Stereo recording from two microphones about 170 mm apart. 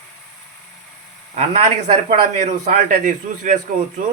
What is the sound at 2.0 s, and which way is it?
A man's voice, 45° right (ahead or behind).